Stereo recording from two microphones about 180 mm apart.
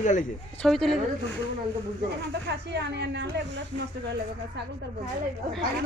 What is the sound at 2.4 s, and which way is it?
Speech, 70° right (ahead or behind).